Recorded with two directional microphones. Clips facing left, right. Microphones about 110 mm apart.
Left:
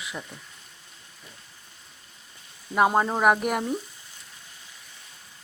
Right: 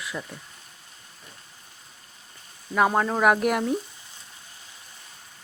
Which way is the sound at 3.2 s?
5° left (ahead or behind).